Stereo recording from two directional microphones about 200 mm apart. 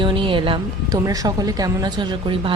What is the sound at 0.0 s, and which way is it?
Speech, 25° right (ahead or behind).